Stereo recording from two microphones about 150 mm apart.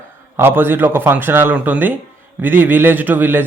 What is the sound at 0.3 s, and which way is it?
Speech, 15° right (ahead or behind).